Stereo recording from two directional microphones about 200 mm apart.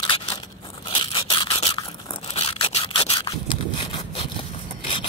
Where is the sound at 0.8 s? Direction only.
25° left (ahead or behind).